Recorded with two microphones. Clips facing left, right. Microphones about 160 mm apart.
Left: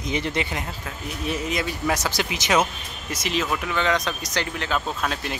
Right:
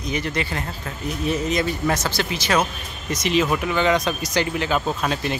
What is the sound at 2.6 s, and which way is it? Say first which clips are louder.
Speech: even; 5° left (ahead or behind).